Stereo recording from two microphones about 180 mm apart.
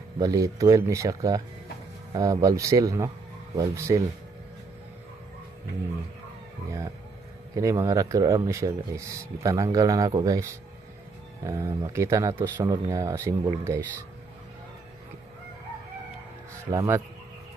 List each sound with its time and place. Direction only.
0.2 s speech: 20° right (ahead or behind)
7.5 s speech: 20° right (ahead or behind)
16.7 s speech: 15° right (ahead or behind)